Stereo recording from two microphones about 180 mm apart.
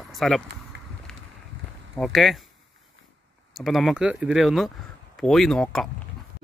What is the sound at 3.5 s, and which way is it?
Speech, centre (ahead or behind).